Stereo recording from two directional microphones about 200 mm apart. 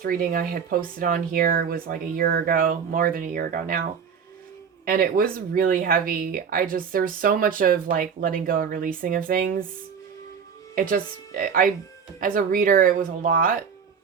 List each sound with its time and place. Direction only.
0.0 s speech: 45° right (ahead or behind)
4.9 s speech: 45° right (ahead or behind)
10.8 s speech: 45° right (ahead or behind)